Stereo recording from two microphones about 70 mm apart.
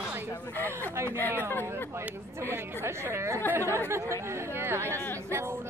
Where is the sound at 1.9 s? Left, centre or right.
Right.